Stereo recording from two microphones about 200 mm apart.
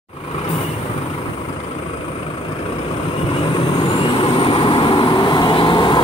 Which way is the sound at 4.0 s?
25° left (ahead or behind).